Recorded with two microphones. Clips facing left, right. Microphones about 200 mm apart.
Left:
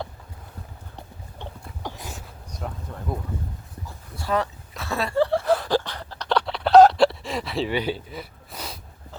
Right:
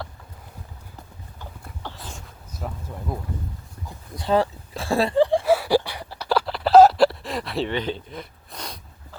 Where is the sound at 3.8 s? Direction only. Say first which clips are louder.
Right 4 dB; 25° right (ahead or behind).